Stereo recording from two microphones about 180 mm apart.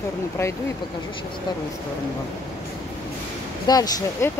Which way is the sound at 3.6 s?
20° left (ahead or behind).